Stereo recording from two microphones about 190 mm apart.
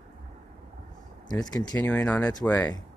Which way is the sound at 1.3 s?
20° left (ahead or behind).